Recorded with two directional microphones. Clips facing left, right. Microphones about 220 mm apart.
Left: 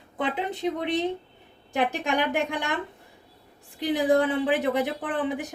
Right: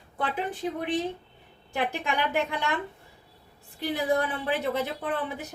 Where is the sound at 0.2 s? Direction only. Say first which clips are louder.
Left 2 dB; 20° left (ahead or behind).